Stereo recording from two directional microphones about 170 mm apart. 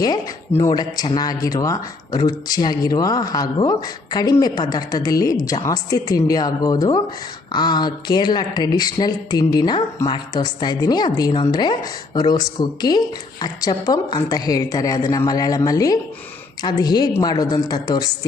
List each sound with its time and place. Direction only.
0.6 s speech: 25° left (ahead or behind)